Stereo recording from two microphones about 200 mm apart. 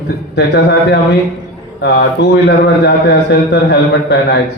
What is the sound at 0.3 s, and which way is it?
Speech, 60° left (ahead or behind).